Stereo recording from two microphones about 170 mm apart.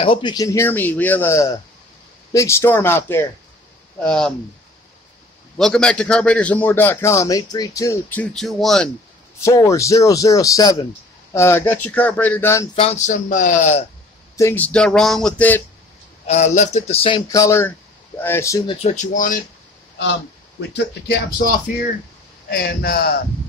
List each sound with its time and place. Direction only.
0.0 s a man's voice: 30° left (ahead or behind); by 4.3 s 5° left (ahead or behind)
5.6 s a man's voice: 5° left (ahead or behind)
9.4 s a man's voice: 20° left (ahead or behind)
12.7 s speech: 40° left (ahead or behind)
14.3 s a man's voice: 15° left (ahead or behind)
16.3 s speech: 40° left (ahead or behind)
17.3 s a man's voice: 15° left (ahead or behind)
18.7 s speech: 40° left (ahead or behind)
22.5 s a man's voice: 70° left (ahead or behind)